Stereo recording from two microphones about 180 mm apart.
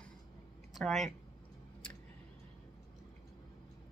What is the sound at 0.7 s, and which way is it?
Speech, centre (ahead or behind).